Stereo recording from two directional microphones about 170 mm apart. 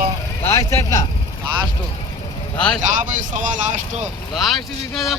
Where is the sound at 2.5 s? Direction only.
5° left (ahead or behind).